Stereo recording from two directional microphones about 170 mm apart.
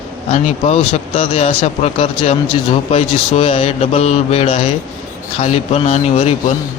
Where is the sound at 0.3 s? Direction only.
40° left (ahead or behind).